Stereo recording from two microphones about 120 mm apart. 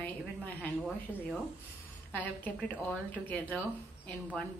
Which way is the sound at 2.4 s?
15° left (ahead or behind).